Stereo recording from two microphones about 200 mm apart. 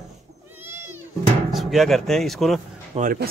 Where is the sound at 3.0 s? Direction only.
45° right (ahead or behind).